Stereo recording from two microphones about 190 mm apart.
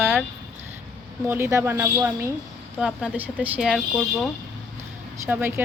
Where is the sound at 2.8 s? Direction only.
5° right (ahead or behind).